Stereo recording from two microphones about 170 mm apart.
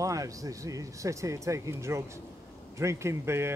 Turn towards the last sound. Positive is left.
turn(degrees=-15)  # may be behind; listen again after turning